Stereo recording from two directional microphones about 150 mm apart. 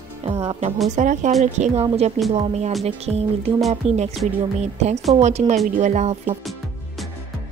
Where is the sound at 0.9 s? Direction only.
60° right (ahead or behind).